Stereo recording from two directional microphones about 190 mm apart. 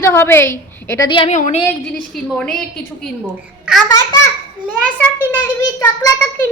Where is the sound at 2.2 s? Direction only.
Centre (ahead or behind).